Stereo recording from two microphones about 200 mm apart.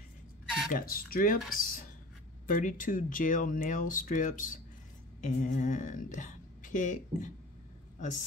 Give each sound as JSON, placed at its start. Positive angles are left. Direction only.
{"t": 0.7, "sound": "speech", "side_deg": 45}